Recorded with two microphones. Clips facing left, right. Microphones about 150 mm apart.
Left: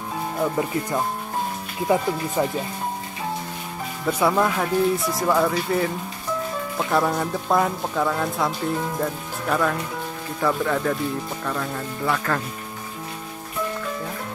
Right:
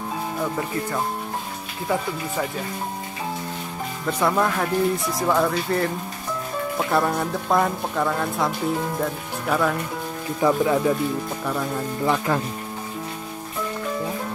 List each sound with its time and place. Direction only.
1.9 s speech: 15° left (ahead or behind)
4.2 s speech: 5° left (ahead or behind)
10.4 s speech: 15° right (ahead or behind)